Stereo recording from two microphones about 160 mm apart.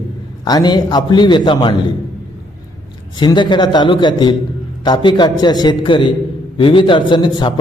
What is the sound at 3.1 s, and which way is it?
A man's voice, 30° left (ahead or behind).